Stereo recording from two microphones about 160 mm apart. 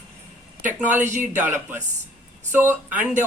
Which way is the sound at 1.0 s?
50° right (ahead or behind).